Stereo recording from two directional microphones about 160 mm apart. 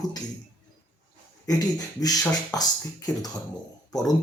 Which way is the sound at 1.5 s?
25° left (ahead or behind).